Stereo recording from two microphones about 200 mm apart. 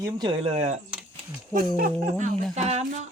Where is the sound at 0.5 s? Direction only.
35° right (ahead or behind).